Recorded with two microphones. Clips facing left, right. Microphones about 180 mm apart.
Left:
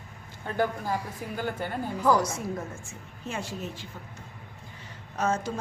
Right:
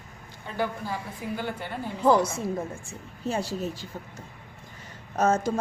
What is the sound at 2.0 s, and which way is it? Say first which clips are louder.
A woman's voice: right 3 dB; 25° right (ahead or behind).